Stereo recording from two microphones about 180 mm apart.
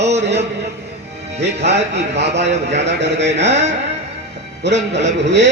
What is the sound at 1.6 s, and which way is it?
A man's voice, 70° right (ahead or behind).